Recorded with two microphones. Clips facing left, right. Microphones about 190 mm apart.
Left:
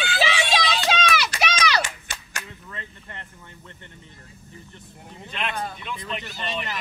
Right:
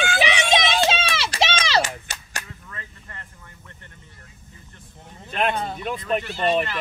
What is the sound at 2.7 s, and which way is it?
Speech, 25° left (ahead or behind).